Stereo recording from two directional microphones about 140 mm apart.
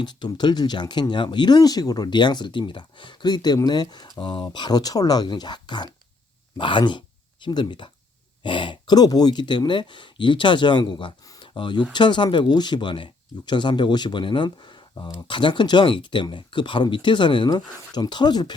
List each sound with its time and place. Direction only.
0.0 s speech: 30° left (ahead or behind)